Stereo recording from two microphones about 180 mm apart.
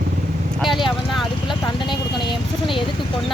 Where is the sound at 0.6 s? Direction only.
Centre (ahead or behind).